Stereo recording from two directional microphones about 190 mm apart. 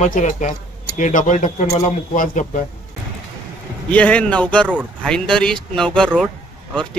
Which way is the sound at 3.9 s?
5° left (ahead or behind).